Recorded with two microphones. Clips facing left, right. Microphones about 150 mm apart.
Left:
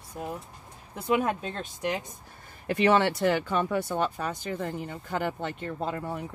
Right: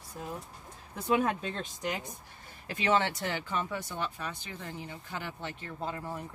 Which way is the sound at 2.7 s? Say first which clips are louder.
Left 6 dB; 60° left (ahead or behind).